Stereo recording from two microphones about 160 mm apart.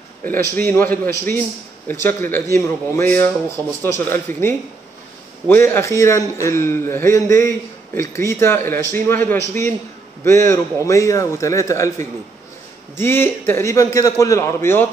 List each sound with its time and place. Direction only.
0.3 s a man's voice: 10° left (ahead or behind)
12.9 s a man's voice: 15° left (ahead or behind)